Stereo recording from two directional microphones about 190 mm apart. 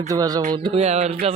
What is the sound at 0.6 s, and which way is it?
Music, 30° right (ahead or behind).